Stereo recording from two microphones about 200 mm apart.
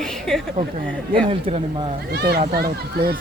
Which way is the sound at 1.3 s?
30° right (ahead or behind).